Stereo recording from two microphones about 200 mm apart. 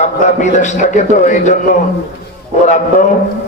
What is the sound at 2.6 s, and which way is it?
Speech, 35° left (ahead or behind).